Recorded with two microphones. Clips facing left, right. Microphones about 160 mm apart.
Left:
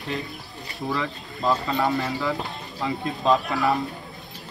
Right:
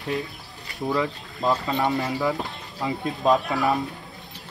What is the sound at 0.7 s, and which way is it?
Speech, 20° right (ahead or behind).